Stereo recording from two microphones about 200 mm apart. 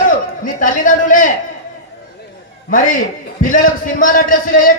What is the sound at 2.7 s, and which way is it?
A man's voice, 45° left (ahead or behind).